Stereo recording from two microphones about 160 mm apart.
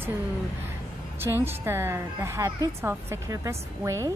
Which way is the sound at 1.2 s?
15° right (ahead or behind).